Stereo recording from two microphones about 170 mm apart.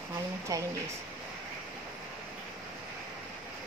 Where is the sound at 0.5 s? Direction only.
20° right (ahead or behind).